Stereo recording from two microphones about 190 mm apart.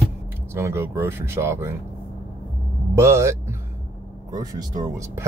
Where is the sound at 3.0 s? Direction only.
15° right (ahead or behind).